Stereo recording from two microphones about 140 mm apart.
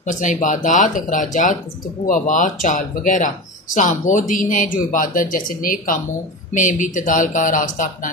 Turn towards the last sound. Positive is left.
turn(degrees=70)  # may be behind; listen again after turning